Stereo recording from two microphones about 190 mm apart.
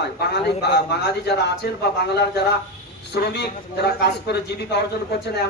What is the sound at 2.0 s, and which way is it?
A man's voice, 60° left (ahead or behind).